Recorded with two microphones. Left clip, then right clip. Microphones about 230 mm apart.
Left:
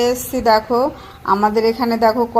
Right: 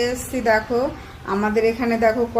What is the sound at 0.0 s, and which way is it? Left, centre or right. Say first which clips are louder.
A woman's voice: left 5 dB; left.